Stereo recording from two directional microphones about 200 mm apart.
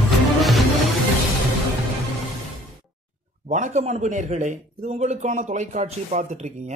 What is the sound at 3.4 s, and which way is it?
A man's voice, 35° right (ahead or behind).